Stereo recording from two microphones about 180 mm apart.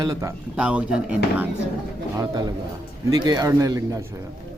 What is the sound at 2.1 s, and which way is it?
A man's voice, 20° right (ahead or behind).